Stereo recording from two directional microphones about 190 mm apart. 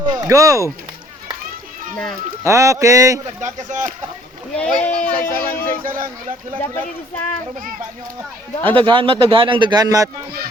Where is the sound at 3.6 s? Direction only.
40° right (ahead or behind).